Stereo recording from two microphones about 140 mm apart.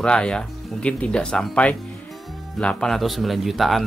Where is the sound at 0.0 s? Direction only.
5° left (ahead or behind).